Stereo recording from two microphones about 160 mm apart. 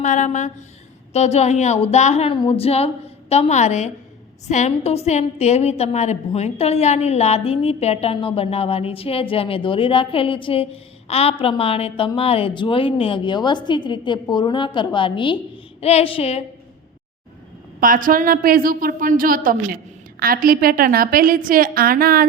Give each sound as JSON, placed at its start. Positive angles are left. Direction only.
{"t": 0.0, "sound": "a woman's voice", "side_deg": 50}
{"t": 17.7, "sound": "a woman's voice", "side_deg": -60}